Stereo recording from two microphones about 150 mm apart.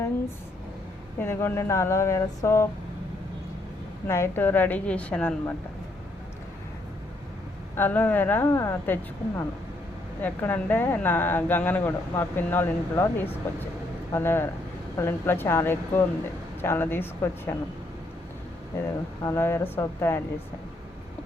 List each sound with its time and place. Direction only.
1.2 s a sound: 15° left (ahead or behind)
4.0 s speech: 15° left (ahead or behind)
7.8 s speech: 10° left (ahead or behind)
19.2 s speech: 15° left (ahead or behind)